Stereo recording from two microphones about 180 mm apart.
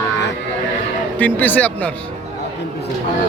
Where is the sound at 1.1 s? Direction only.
10° left (ahead or behind).